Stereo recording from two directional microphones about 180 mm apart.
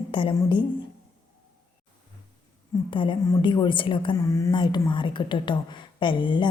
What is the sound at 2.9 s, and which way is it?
A woman's voice, 25° left (ahead or behind).